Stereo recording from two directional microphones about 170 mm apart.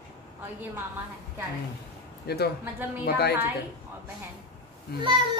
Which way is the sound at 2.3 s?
70° left (ahead or behind).